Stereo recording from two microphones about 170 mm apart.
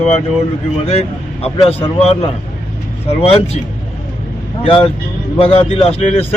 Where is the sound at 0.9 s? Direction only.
35° left (ahead or behind).